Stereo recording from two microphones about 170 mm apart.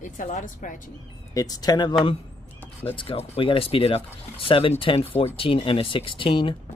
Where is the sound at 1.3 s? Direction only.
20° left (ahead or behind).